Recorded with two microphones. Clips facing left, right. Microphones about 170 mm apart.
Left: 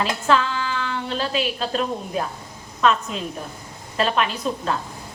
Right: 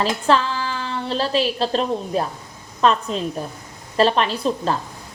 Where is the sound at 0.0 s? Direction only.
35° right (ahead or behind).